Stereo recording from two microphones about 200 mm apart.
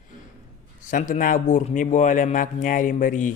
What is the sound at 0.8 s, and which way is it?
A man's voice, 40° left (ahead or behind).